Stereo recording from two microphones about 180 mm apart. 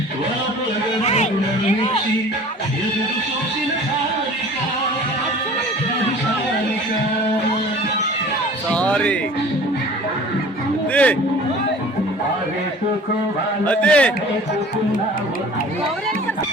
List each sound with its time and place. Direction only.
1.0 s music: 35° left (ahead or behind)
8.7 s music: 5° left (ahead or behind)
10.9 s a man's voice: 10° left (ahead or behind)
13.7 s a man's voice: 5° left (ahead or behind)